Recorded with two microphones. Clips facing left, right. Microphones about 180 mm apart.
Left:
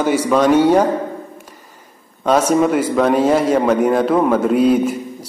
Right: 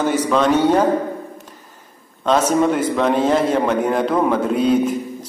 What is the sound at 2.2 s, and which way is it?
A man's voice, 10° left (ahead or behind).